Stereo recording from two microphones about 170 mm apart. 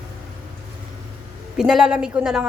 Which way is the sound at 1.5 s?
Centre (ahead or behind).